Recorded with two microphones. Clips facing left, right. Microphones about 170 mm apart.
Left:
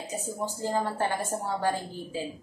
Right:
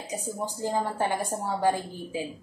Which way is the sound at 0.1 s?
15° right (ahead or behind).